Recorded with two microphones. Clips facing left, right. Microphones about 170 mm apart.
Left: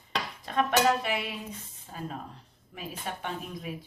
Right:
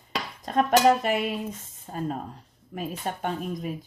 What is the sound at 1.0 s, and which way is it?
Speech, 50° right (ahead or behind).